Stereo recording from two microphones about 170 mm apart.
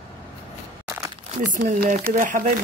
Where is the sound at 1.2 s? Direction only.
50° right (ahead or behind).